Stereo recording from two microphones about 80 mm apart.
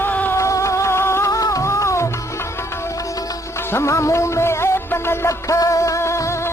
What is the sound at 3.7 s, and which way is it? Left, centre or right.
Music, left.